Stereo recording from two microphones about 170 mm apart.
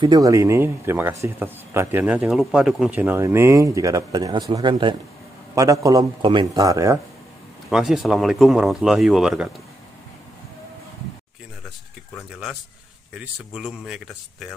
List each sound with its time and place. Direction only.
0.0 s speech: 20° right (ahead or behind)
7.7 s speech: centre (ahead or behind)
13.2 s speech: 5° right (ahead or behind)